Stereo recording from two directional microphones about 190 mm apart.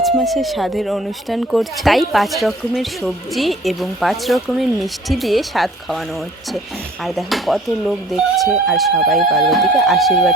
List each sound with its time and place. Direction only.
0.0 s speech: centre (ahead or behind)
7.0 s speech: centre (ahead or behind)